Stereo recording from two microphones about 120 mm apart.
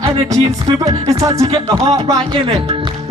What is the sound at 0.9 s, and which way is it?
Speech, 30° right (ahead or behind).